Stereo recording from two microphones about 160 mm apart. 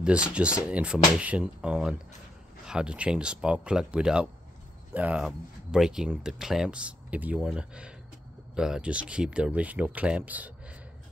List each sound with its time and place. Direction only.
0.0 s speech: 5° right (ahead or behind)